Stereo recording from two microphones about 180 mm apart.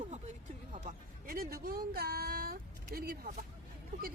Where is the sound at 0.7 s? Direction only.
50° right (ahead or behind).